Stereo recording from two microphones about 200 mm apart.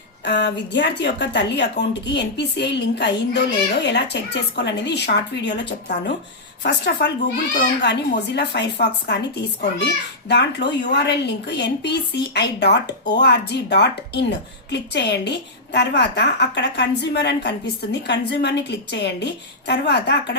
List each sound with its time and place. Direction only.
0.3 s a woman's voice: 60° left (ahead or behind)